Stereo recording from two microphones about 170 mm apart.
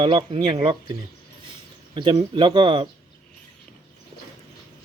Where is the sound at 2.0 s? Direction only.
30° right (ahead or behind).